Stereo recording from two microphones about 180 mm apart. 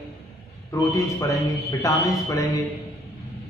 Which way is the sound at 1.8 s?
20° left (ahead or behind).